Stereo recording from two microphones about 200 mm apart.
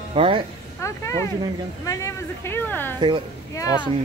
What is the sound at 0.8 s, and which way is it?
Speech, 15° left (ahead or behind).